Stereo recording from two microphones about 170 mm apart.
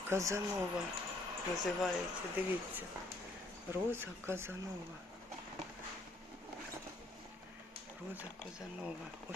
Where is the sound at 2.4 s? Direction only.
10° right (ahead or behind).